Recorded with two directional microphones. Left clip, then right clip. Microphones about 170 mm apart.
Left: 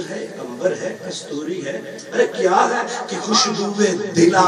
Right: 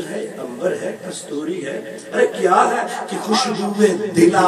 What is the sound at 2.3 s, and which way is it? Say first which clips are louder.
A man's voice: right 1 dB; 55° right (ahead or behind).